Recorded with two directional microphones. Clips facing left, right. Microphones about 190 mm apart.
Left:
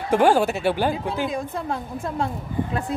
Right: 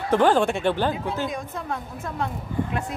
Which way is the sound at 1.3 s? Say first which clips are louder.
Left 3 dB; 30° left (ahead or behind).